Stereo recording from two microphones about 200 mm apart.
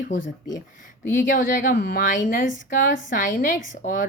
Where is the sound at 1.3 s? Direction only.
40° left (ahead or behind).